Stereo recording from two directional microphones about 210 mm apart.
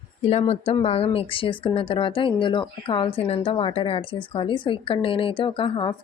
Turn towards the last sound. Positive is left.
turn(degrees=25)  # may be behind; listen again after turning